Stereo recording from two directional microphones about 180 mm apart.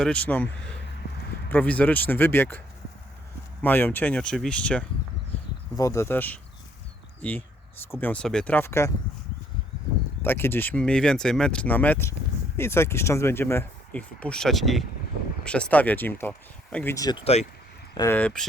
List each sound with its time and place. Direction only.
0.0 s speech: 5° left (ahead or behind)
3.6 s speech: 10° left (ahead or behind)
5.7 s speech: 15° left (ahead or behind)
10.2 s speech: 10° left (ahead or behind)
16.9 s speech: 20° left (ahead or behind)
17.9 s speech: 15° left (ahead or behind)